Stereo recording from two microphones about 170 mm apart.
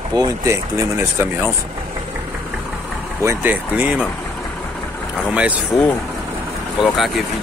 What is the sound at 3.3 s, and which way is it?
Speech, 10° right (ahead or behind).